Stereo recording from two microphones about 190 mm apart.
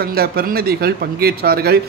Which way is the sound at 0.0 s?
55° right (ahead or behind).